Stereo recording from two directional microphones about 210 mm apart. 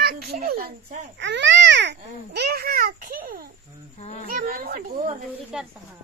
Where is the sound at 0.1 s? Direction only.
45° right (ahead or behind).